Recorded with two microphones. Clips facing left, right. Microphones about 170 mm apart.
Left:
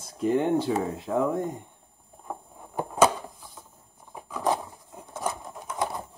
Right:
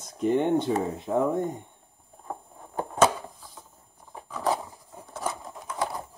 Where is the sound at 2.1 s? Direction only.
5° left (ahead or behind).